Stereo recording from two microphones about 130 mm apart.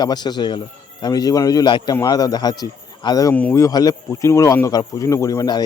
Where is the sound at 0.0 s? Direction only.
35° left (ahead or behind).